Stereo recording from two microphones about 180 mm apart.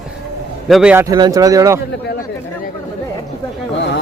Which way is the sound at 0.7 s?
5° right (ahead or behind).